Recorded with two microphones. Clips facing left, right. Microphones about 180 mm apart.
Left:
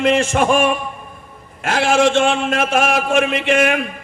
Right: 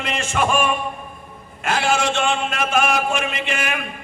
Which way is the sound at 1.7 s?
80° left.